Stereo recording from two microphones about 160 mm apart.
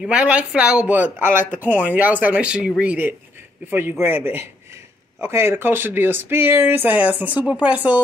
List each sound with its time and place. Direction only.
0.0 s speech: 5° right (ahead or behind)